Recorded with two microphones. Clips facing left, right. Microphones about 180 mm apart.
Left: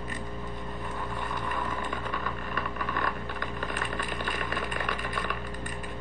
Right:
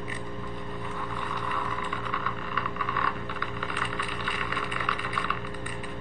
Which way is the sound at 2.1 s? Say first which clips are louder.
Even; 45° left (ahead or behind).